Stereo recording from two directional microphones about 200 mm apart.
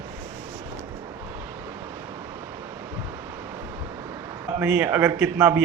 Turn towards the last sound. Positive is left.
turn(degrees=-10)  # may be behind; listen again after turning